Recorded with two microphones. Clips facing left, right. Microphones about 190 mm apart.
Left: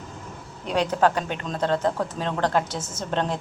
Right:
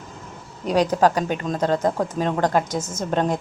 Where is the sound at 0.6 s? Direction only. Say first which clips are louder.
Right 5 dB; 40° right (ahead or behind).